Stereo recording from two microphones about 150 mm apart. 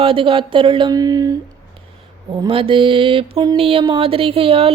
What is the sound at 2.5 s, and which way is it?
Speech, 35° right (ahead or behind).